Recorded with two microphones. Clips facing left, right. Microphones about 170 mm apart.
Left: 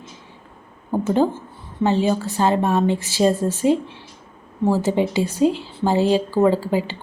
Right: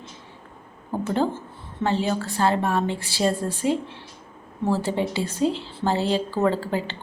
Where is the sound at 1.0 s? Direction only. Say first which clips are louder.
Left 5 dB; 15° left (ahead or behind).